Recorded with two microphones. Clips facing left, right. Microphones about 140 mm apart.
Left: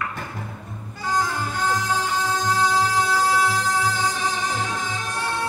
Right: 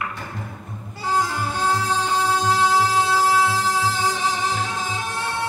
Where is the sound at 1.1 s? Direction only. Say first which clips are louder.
Right 1 dB; 30° right (ahead or behind).